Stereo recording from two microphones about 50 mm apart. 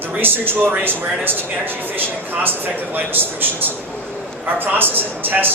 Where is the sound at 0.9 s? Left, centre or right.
Right.